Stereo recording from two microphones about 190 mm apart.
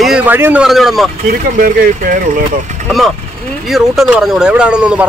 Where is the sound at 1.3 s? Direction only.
50° right (ahead or behind).